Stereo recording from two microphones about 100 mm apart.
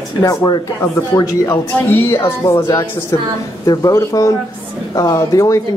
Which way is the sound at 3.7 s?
35° left (ahead or behind).